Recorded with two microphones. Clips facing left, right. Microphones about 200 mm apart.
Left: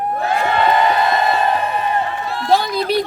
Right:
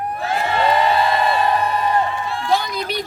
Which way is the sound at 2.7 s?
35° left (ahead or behind).